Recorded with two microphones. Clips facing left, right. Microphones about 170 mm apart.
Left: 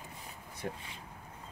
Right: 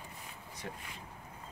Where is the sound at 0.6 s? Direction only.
45° left (ahead or behind).